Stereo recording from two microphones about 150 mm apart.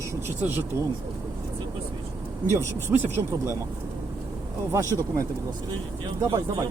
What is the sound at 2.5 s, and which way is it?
Speech, 15° right (ahead or behind).